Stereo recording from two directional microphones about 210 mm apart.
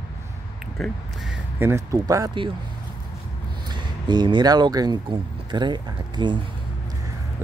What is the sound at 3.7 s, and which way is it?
Speech, 20° right (ahead or behind).